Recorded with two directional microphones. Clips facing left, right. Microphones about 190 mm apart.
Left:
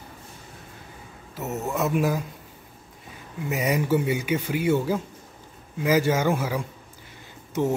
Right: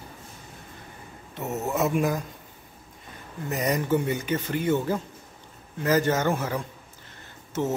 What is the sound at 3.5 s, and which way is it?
Speech, 10° left (ahead or behind).